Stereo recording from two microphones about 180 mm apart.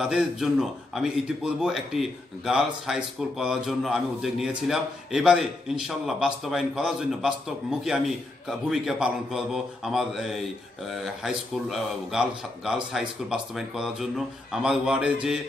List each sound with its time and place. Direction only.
0.0 s a man's voice: 5° right (ahead or behind)